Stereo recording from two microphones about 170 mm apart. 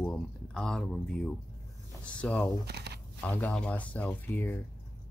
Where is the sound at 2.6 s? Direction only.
75° right (ahead or behind).